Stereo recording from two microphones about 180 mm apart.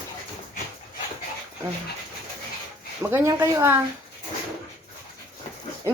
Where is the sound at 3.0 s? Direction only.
15° right (ahead or behind).